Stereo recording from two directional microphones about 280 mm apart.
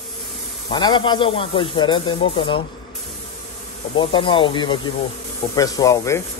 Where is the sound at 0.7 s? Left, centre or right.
Centre.